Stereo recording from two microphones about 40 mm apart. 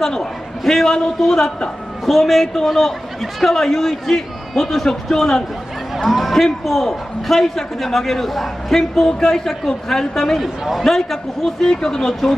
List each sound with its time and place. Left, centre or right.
0.0 s a man's voice: centre
2.0 s a man's voice: centre
10.4 s speech: centre
10.8 s a man's voice: centre